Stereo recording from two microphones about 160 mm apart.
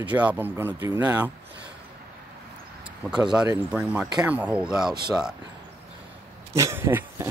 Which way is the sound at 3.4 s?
10° right (ahead or behind).